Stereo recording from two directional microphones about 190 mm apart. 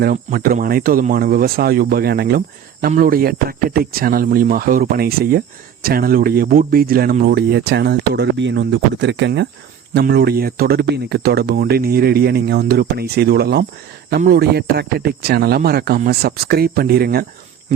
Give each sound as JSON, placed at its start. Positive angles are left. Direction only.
{"t": 0.0, "sound": "speech", "side_deg": -50}